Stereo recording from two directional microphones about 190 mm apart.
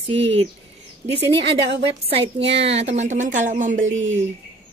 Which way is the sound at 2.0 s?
30° right (ahead or behind).